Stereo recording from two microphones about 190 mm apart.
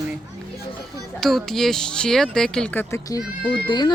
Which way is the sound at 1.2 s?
Centre (ahead or behind).